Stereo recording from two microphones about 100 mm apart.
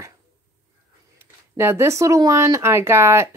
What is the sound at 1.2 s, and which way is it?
Speech, 25° right (ahead or behind).